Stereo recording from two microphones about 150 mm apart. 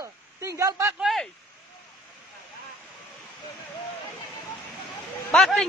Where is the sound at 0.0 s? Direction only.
20° right (ahead or behind).